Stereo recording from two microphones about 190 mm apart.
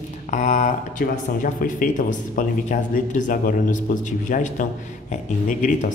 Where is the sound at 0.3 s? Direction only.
40° left (ahead or behind).